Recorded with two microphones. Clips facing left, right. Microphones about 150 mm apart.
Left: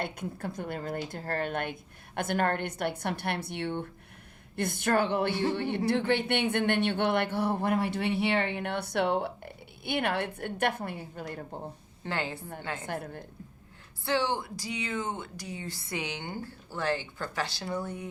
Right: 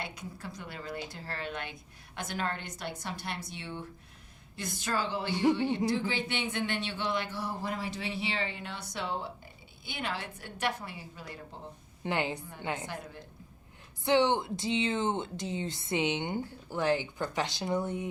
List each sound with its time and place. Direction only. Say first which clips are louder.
0.0 s speech: left 6 dB; 55° left (ahead or behind)
5.3 s a woman's voice: right 3 dB; 15° right (ahead or behind)
5.5 s speech: left 1 dB; 60° left (ahead or behind)
12.0 s a woman's voice: right 2 dB; 15° right (ahead or behind)
12.8 s a woman's voice: left 5 dB; 55° left (ahead or behind)
14.0 s speech: right 3 dB; 20° right (ahead or behind)